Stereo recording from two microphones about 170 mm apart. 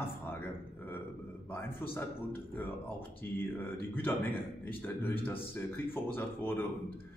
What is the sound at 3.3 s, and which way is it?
A man's voice, 10° left (ahead or behind).